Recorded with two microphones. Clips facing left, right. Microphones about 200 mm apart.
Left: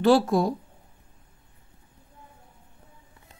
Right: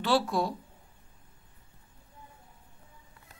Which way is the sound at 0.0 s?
45° left (ahead or behind).